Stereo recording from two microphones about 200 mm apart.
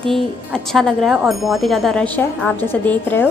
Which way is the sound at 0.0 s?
Centre (ahead or behind).